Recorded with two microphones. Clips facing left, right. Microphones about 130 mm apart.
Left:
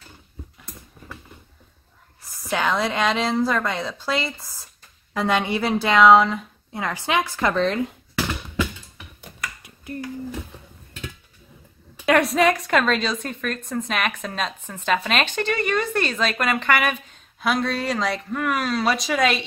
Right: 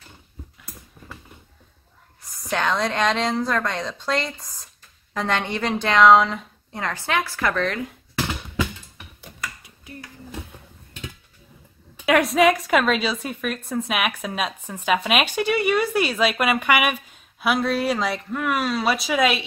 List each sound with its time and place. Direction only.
2.5 s a woman's voice: 5° left (ahead or behind)
7.1 s speech: 15° left (ahead or behind)
9.9 s a sound: 50° left (ahead or behind)
12.1 s a woman's voice: centre (ahead or behind)